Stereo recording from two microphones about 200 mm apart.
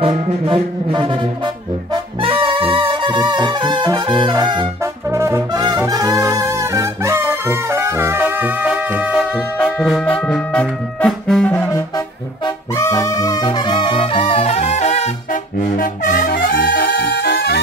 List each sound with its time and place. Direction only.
0.0 s music: 30° right (ahead or behind)
2.2 s music: 25° right (ahead or behind)
5.1 s brass instrument: 15° right (ahead or behind); by 11.8 s 10° left (ahead or behind)
12.7 s music: 15° left (ahead or behind); by 17.6 s 55° left (ahead or behind)